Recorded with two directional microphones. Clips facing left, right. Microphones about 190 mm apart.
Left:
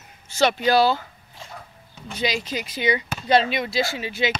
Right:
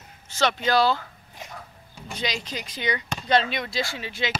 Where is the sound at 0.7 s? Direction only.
5° left (ahead or behind).